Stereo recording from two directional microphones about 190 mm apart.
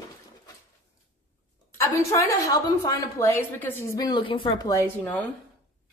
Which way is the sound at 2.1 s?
15° left (ahead or behind).